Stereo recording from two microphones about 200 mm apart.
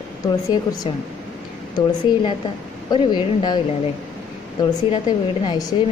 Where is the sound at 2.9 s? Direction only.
20° left (ahead or behind).